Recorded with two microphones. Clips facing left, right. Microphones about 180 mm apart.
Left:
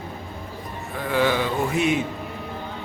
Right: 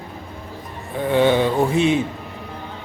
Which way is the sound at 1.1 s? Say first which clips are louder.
Right 5 dB; 25° right (ahead or behind).